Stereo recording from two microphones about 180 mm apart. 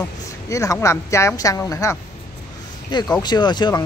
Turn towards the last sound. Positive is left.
turn(degrees=25)  # may be behind; listen again after turning